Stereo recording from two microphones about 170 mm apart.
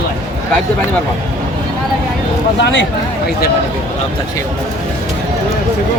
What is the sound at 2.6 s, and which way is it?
Speech, 90° left.